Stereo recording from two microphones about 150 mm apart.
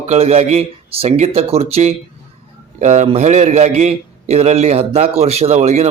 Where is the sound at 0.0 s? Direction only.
45° right (ahead or behind).